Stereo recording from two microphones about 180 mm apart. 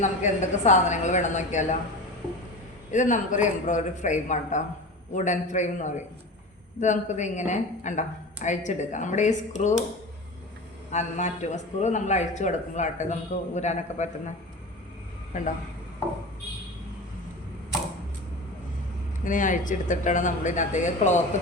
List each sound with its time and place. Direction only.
0.0 s a man's voice: 40° left (ahead or behind)
2.9 s a woman's voice: 45° left (ahead or behind)
10.9 s a man's voice: 40° left (ahead or behind)
19.2 s a woman's voice: 45° left (ahead or behind)